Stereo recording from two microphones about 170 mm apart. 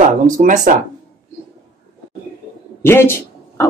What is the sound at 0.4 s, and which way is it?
Speech, 50° right (ahead or behind).